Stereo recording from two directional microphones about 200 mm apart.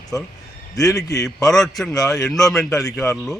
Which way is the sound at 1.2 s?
Centre (ahead or behind).